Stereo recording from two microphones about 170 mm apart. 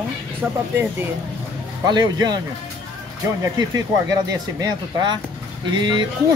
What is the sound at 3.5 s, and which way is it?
Speech, 25° right (ahead or behind).